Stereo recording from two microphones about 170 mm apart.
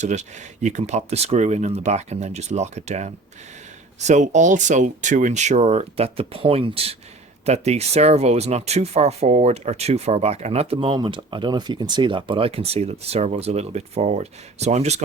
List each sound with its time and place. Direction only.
0.0 s speech: 45° right (ahead or behind)